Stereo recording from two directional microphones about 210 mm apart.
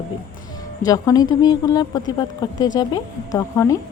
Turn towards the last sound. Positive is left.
turn(degrees=15)  # may be behind; listen again after turning